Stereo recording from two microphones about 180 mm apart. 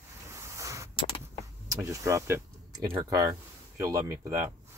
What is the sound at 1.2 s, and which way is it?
Vehicle, 15° right (ahead or behind).